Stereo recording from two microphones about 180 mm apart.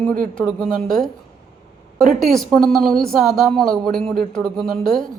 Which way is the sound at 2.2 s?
Centre (ahead or behind).